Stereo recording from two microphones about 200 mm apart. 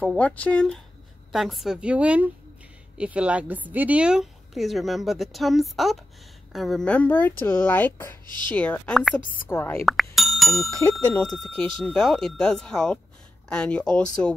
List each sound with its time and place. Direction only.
0.0 s a woman's voice: 5° left (ahead or behind)
9.2 s a woman's voice: 45° left (ahead or behind)
9.5 s speech: 10° left (ahead or behind)
10.1 s a woman's voice: centre (ahead or behind)